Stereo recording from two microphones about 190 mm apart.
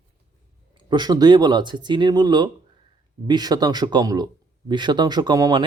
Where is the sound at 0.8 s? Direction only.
25° right (ahead or behind).